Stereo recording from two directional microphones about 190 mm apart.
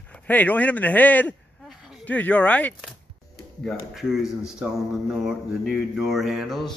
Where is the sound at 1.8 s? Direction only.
Centre (ahead or behind).